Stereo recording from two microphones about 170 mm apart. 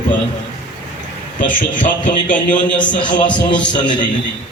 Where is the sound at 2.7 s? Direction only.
25° left (ahead or behind).